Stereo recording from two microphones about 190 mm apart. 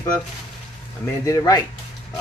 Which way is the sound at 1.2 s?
15° left (ahead or behind).